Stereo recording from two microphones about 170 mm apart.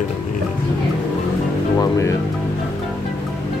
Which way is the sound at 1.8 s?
20° left (ahead or behind).